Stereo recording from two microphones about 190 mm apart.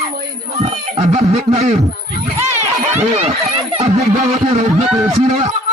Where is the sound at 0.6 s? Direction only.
35° right (ahead or behind).